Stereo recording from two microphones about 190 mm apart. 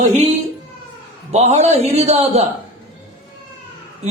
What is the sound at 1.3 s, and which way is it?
Speech, 35° right (ahead or behind).